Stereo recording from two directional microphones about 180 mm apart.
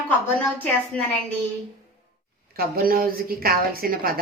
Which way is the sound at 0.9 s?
5° left (ahead or behind).